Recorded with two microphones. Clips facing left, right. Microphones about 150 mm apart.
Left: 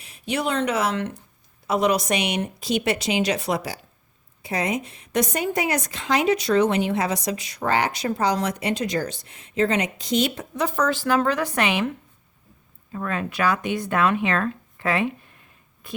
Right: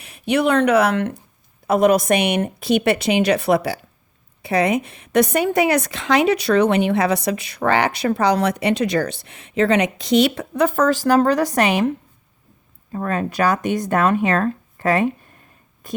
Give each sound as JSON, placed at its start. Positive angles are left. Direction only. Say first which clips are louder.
{"t": 0.0, "sound": "a woman's voice", "louder": "right 7 dB", "side_deg": -60}